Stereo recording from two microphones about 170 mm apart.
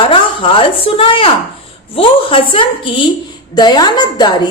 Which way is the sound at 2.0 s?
30° left (ahead or behind).